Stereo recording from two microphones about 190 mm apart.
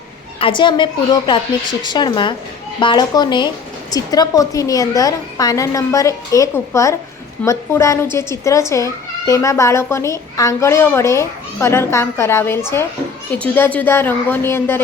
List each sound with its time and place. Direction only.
0.3 s a woman's voice: 25° left (ahead or behind)